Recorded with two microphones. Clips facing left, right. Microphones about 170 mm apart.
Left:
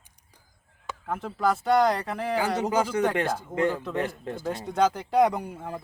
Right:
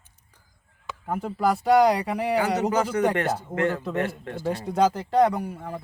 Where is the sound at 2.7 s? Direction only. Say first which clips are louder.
Right 1 dB; 10° left (ahead or behind).